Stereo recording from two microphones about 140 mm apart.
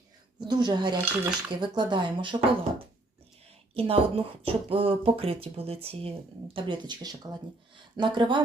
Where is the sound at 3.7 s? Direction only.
45° right (ahead or behind).